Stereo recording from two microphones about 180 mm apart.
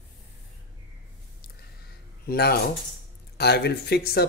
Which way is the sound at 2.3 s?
60° left (ahead or behind).